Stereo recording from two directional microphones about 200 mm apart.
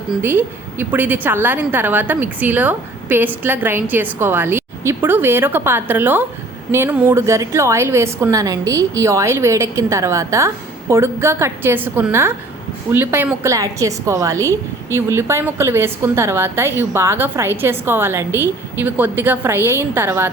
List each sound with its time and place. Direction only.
0.1 s a woman's voice: 10° right (ahead or behind)